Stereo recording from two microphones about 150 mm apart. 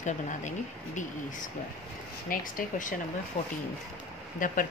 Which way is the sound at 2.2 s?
65° left (ahead or behind).